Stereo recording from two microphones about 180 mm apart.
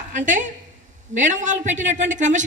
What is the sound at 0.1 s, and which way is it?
A woman's voice, 45° right (ahead or behind).